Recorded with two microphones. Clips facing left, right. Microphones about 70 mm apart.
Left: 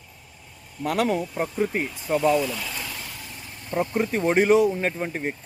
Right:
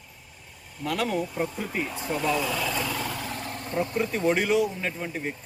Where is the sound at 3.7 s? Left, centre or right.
Left.